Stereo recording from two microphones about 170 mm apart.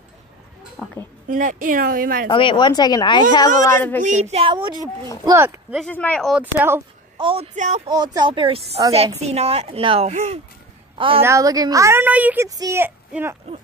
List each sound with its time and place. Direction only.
0.8 s a woman's voice: centre (ahead or behind)
1.3 s speech: 50° right (ahead or behind)
2.2 s a woman's voice: 30° left (ahead or behind); by 4.0 s 15° left (ahead or behind)
4.0 s a woman's voice: 45° right (ahead or behind); by 5.1 s 25° right (ahead or behind)
5.2 s a woman's voice: 15° right (ahead or behind)
5.8 s speech: 10° left (ahead or behind)
6.3 s a woman's voice: 10° right (ahead or behind)
7.2 s a woman's voice: 30° right (ahead or behind)
7.5 s speech: 45° right (ahead or behind)
7.8 s a woman's voice: 25° right (ahead or behind); by 10.4 s 40° right (ahead or behind)
11.1 s a woman's voice: 15° right (ahead or behind)
12.4 s a woman's voice: 20° right (ahead or behind)